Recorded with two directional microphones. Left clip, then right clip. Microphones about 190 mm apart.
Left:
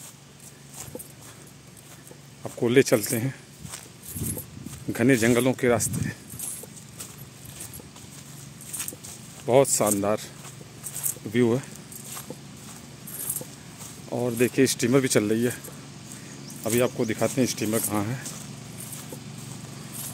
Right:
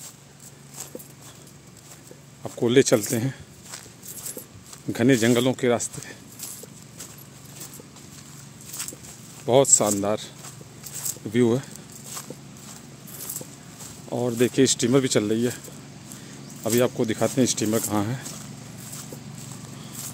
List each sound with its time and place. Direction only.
2.4 s speech: 10° right (ahead or behind)
4.9 s speech: 10° right (ahead or behind)
9.5 s speech: 10° right (ahead or behind)
11.1 s a sound: 15° right (ahead or behind)
14.0 s speech: 10° right (ahead or behind)
16.6 s speech: 15° right (ahead or behind)